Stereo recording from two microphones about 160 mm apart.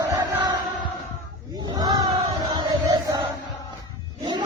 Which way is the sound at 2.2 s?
25° right (ahead or behind).